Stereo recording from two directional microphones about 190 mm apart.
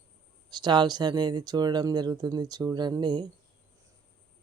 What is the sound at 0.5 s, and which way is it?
Speech, 20° right (ahead or behind).